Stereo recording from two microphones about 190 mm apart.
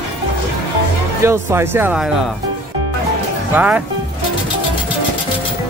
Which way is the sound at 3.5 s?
10° right (ahead or behind).